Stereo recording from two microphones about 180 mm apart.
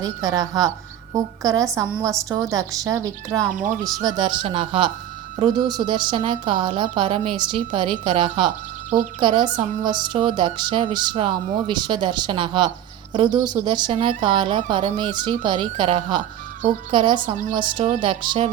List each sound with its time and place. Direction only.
0.0 s a woman's voice: 20° right (ahead or behind)
17.2 s a woman's voice: 45° right (ahead or behind)
18.0 s a woman's voice: 25° right (ahead or behind)